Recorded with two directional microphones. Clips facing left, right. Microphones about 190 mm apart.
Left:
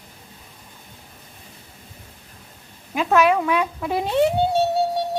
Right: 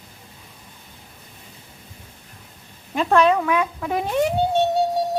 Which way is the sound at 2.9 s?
5° left (ahead or behind).